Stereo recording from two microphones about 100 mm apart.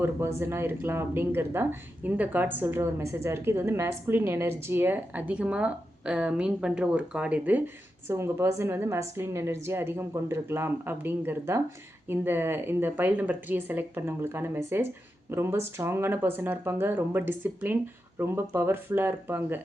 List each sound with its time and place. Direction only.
0.0 s a woman's voice: 25° right (ahead or behind)
8.0 s speech: 25° right (ahead or behind)